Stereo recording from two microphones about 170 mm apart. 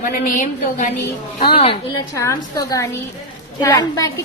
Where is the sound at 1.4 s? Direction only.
30° left (ahead or behind).